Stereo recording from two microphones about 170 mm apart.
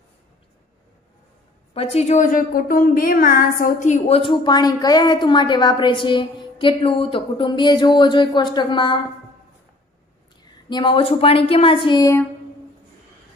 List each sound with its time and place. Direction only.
1.7 s a woman's voice: 35° left (ahead or behind)
10.7 s speech: 25° left (ahead or behind)